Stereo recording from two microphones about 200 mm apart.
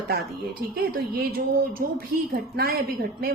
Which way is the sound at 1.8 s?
50° right (ahead or behind).